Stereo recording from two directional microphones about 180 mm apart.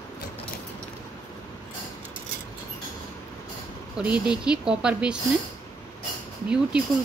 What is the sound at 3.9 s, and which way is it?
Speech, 5° right (ahead or behind).